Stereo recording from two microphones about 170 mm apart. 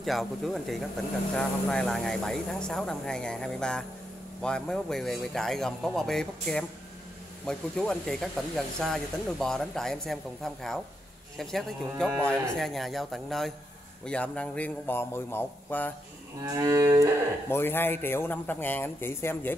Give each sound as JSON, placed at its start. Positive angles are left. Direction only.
{"t": 0.0, "sound": "speech", "side_deg": 0}
{"t": 16.5, "sound": "music", "side_deg": -20}
{"t": 17.5, "sound": "speech", "side_deg": 15}